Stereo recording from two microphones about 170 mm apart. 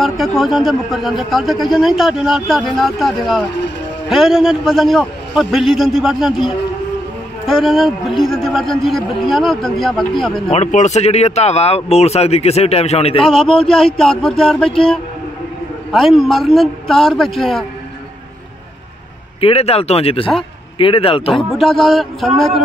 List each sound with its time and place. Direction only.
0.0 s a man's voice: centre (ahead or behind)
10.5 s speech: 45° left (ahead or behind)
13.2 s a man's voice: 5° left (ahead or behind)
19.4 s a man's voice: 35° left (ahead or behind)
21.5 s a man's voice: centre (ahead or behind)